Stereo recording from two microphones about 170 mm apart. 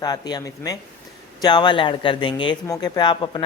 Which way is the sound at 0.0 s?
25° left (ahead or behind).